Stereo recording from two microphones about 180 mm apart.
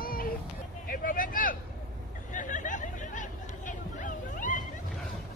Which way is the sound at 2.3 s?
45° left (ahead or behind).